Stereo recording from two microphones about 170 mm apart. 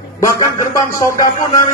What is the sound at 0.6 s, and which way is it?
Speech, 50° left (ahead or behind).